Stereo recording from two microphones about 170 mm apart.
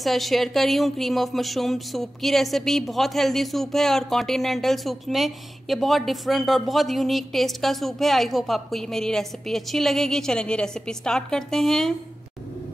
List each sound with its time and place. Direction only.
0.0 s speech: centre (ahead or behind)